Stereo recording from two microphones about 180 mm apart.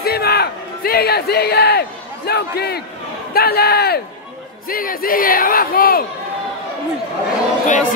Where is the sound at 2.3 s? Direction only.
65° left (ahead or behind).